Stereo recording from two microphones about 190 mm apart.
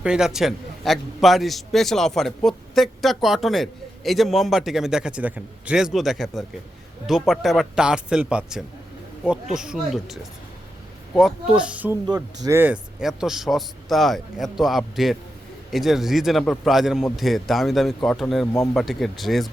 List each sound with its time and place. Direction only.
0.0 s a man's voice: 5° right (ahead or behind)
12.0 s a man's voice: 20° right (ahead or behind); by 19.5 s centre (ahead or behind)